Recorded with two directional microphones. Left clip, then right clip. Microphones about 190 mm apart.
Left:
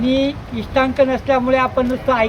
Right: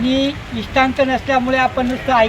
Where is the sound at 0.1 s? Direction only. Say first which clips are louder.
Even; 35° left (ahead or behind).